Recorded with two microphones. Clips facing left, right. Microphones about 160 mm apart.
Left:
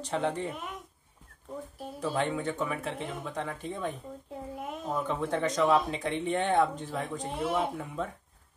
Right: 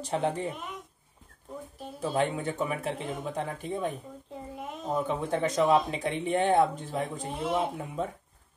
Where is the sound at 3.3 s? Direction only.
25° right (ahead or behind).